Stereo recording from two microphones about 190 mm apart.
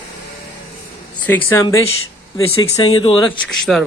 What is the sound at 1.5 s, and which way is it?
Speech, 15° left (ahead or behind).